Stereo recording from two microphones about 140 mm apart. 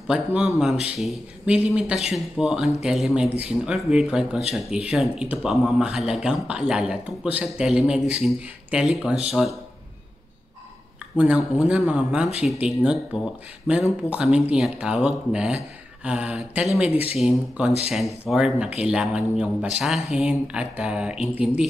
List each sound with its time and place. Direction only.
0.1 s speech: 5° right (ahead or behind)
11.1 s speech: 5° right (ahead or behind)